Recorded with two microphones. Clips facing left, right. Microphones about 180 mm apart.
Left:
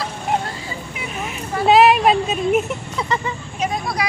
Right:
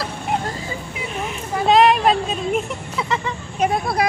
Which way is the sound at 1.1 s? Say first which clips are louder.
Right 2 dB; 5° left (ahead or behind).